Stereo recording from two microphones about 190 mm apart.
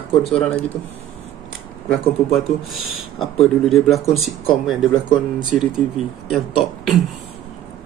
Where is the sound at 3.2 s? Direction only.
Centre (ahead or behind).